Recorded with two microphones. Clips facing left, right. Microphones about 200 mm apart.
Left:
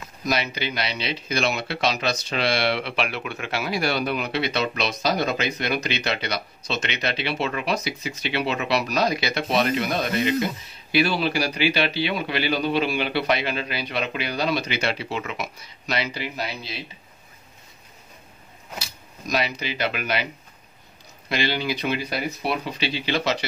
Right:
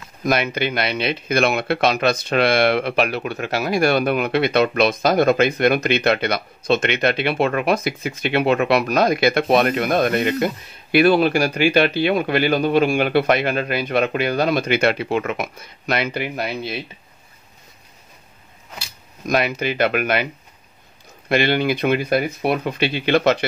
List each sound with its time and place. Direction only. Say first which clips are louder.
0.2 s speech: right 6 dB; 55° right (ahead or behind)
19.2 s speech: right 6 dB; 55° right (ahead or behind)
21.3 s speech: right 7 dB; 55° right (ahead or behind)